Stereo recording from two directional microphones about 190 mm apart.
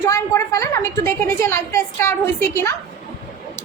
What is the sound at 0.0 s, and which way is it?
A woman's voice, 15° left (ahead or behind).